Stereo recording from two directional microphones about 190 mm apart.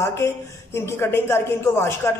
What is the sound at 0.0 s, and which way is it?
A man's voice, 15° left (ahead or behind).